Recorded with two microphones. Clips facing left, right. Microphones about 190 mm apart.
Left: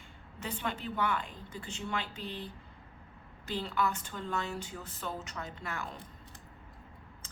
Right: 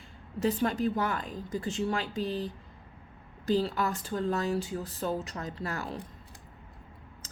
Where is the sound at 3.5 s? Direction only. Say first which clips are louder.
Right 6 dB; 40° right (ahead or behind).